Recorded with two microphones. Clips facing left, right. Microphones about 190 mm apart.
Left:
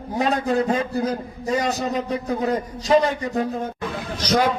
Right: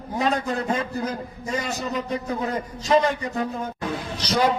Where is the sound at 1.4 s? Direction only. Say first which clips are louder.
Left 6 dB; 35° left (ahead or behind).